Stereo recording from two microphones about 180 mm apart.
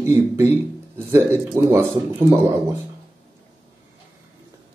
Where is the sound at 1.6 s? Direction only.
15° right (ahead or behind).